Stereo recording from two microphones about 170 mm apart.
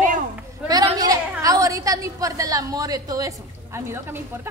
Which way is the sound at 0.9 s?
20° right (ahead or behind).